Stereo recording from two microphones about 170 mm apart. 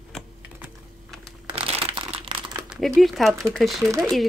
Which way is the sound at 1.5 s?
30° right (ahead or behind).